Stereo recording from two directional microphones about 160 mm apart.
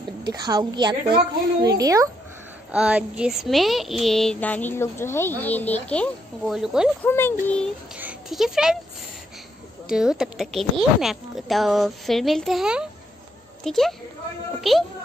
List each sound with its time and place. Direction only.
0.3 s a woman's voice: 25° right (ahead or behind)
2.7 s speech: 5° right (ahead or behind)
7.0 s a child's voice: 15° left (ahead or behind)
8.0 s speech: 5° right (ahead or behind)
9.8 s speech: 5° right (ahead or behind)